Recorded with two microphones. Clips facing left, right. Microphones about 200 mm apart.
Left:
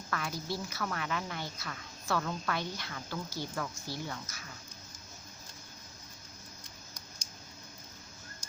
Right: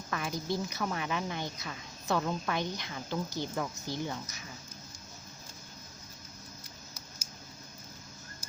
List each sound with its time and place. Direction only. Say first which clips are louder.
0.1 s a woman's voice: right 3 dB; 20° right (ahead or behind)